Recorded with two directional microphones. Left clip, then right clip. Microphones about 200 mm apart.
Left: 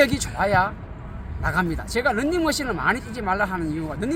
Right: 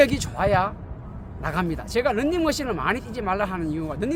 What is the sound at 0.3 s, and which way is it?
Speech, 30° right (ahead or behind).